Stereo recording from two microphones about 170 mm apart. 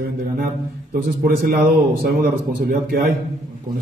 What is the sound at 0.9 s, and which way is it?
A man's voice, 60° right (ahead or behind).